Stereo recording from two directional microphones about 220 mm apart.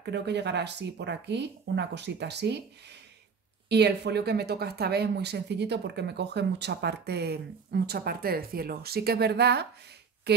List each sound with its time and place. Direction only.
0.0 s speech: 50° right (ahead or behind)
3.6 s speech: 50° right (ahead or behind)
10.3 s a sound: 50° right (ahead or behind)